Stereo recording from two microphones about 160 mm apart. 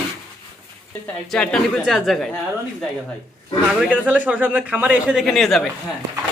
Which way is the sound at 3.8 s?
10° right (ahead or behind).